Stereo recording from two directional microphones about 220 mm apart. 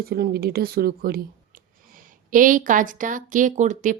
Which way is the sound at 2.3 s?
40° right (ahead or behind).